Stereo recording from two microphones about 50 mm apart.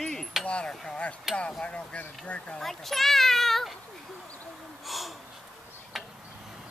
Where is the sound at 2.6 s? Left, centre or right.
Centre.